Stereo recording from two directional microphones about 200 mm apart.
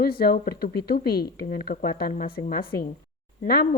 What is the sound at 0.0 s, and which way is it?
A woman's voice, 50° left (ahead or behind).